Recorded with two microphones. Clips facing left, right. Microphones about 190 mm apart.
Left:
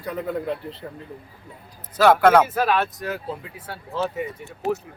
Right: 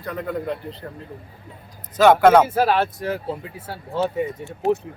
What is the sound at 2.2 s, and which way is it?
Speech, 10° right (ahead or behind).